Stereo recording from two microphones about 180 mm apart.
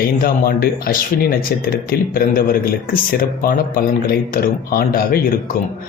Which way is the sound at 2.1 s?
55° left (ahead or behind).